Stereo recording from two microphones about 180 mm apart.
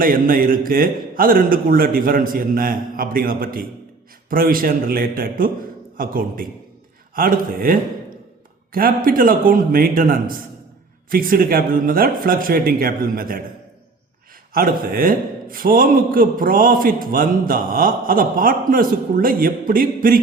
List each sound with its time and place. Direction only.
0.0 s a man's voice: 55° right (ahead or behind)
14.5 s a man's voice: 55° right (ahead or behind)